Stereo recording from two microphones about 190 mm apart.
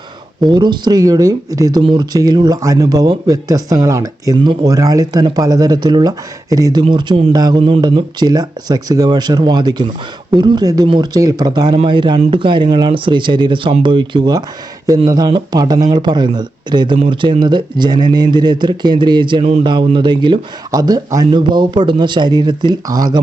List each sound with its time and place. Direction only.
0.4 s speech: 25° right (ahead or behind)